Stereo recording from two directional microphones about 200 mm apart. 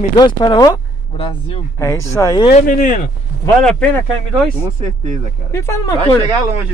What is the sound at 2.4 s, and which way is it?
Speech, 40° left (ahead or behind).